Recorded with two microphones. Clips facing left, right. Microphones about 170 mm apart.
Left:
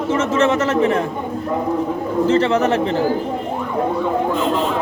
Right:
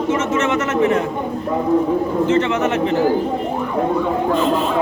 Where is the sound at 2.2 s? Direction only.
35° left (ahead or behind).